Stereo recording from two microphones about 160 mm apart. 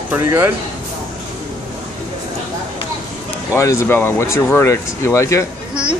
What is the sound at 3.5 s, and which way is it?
Speech, 15° left (ahead or behind).